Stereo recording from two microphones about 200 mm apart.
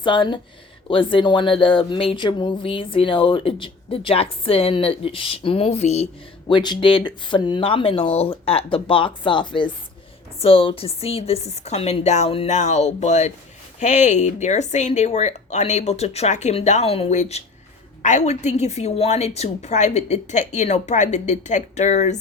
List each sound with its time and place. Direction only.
0.0 s speech: 25° left (ahead or behind)
6.5 s a woman's voice: 20° left (ahead or behind)